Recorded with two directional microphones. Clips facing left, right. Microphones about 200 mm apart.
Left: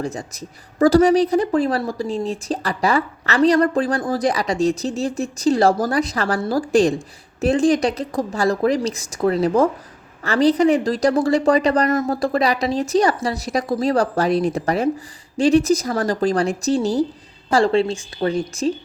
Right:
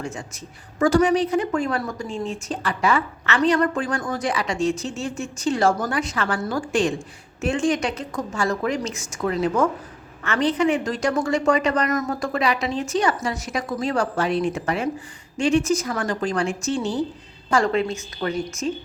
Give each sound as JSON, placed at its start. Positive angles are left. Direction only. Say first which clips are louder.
{"t": 0.0, "sound": "a woman's voice", "louder": "left 5 dB", "side_deg": 35}